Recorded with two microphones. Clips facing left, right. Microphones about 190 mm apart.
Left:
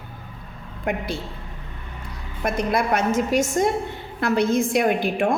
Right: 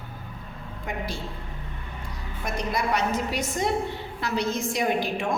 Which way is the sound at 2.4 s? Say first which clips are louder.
Left 6 dB; 55° left (ahead or behind).